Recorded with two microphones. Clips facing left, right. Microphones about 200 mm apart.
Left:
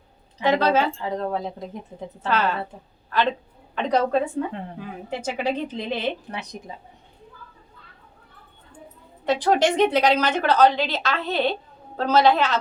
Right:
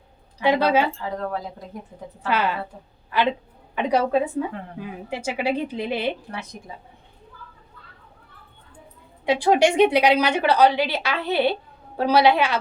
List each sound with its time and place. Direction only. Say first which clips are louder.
0.6 s a woman's voice: right 1 dB; 15° right (ahead or behind)
1.0 s speech: left 2 dB; 20° left (ahead or behind)
2.2 s a woman's voice: even; 10° right (ahead or behind)
9.2 s a woman's voice: right 2 dB; 10° right (ahead or behind)